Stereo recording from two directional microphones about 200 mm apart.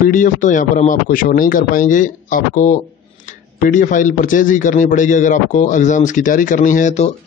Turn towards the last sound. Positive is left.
turn(degrees=40)  # may be behind; listen again after turning